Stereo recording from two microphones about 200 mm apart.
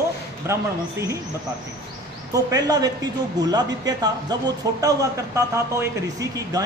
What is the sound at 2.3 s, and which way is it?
Speech, 20° right (ahead or behind).